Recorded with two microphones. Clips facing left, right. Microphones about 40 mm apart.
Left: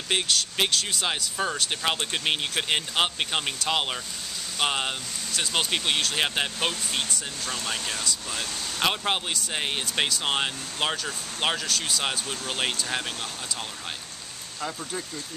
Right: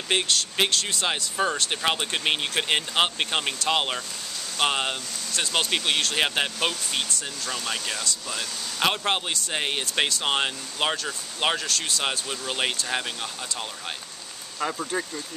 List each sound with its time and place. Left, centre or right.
0.1 s speech: centre
14.6 s speech: right